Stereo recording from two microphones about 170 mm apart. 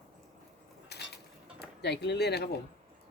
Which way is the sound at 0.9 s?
75° left (ahead or behind).